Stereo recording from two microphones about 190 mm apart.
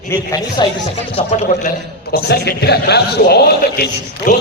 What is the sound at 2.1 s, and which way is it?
A man's voice, 60° left (ahead or behind).